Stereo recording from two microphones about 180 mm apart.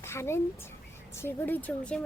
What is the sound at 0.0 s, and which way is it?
A child's voice, 15° left (ahead or behind).